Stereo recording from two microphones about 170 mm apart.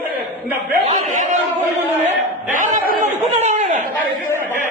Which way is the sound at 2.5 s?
50° right (ahead or behind).